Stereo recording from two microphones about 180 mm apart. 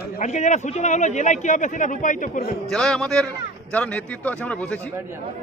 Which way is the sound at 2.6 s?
5° left (ahead or behind).